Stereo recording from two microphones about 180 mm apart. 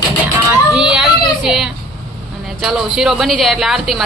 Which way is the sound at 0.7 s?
5° right (ahead or behind).